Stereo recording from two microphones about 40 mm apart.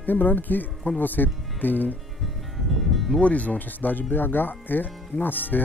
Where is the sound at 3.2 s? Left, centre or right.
Left.